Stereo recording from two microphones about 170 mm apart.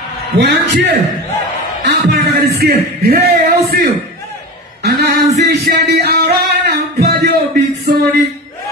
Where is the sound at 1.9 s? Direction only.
75° right (ahead or behind).